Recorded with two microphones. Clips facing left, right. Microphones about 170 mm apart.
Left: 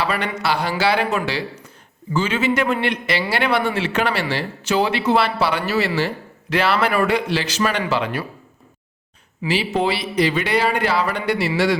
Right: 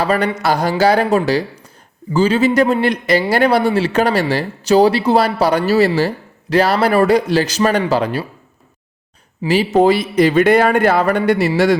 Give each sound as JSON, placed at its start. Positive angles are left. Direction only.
{"t": 0.0, "sound": "speech", "side_deg": -40}
{"t": 9.5, "sound": "speech", "side_deg": -45}